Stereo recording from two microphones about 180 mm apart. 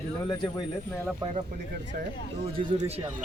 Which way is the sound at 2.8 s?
35° right (ahead or behind).